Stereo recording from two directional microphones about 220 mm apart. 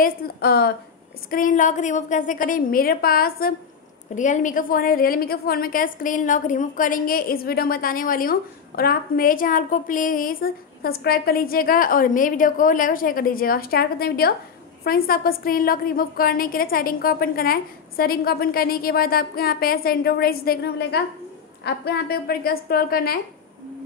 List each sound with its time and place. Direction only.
0.0 s a woman's voice: 45° left (ahead or behind)
1.3 s a woman's voice: 35° left (ahead or behind)